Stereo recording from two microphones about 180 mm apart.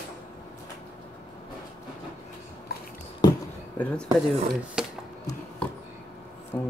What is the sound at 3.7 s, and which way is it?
Speech, 5° left (ahead or behind).